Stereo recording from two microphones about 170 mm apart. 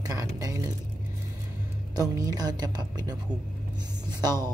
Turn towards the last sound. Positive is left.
turn(degrees=-25)  # may be behind; listen again after turning